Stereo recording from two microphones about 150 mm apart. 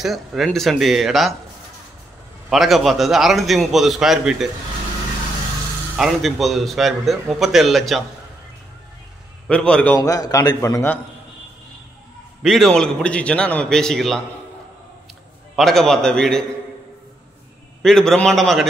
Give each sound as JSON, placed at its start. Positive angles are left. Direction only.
{"t": 0.0, "sound": "a man's voice", "side_deg": 0}
{"t": 2.5, "sound": "a man's voice", "side_deg": 0}
{"t": 5.9, "sound": "a man's voice", "side_deg": 0}
{"t": 9.5, "sound": "a man's voice", "side_deg": 5}
{"t": 9.9, "sound": "a man's voice", "side_deg": 25}
{"t": 12.4, "sound": "a man's voice", "side_deg": 0}
{"t": 15.5, "sound": "a man's voice", "side_deg": 0}
{"t": 17.8, "sound": "a man's voice", "side_deg": 5}